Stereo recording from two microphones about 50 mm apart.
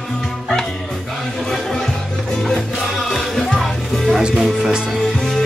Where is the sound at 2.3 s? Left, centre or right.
Centre.